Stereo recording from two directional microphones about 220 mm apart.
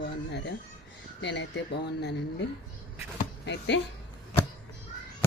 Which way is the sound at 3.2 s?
50° left (ahead or behind).